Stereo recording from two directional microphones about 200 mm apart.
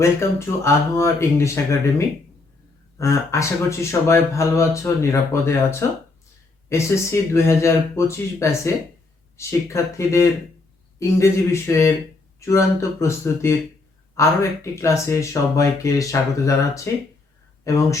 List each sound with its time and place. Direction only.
0.0 s speech: 15° left (ahead or behind)